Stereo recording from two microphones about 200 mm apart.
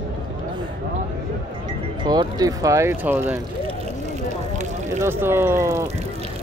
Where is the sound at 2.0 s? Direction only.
20° right (ahead or behind).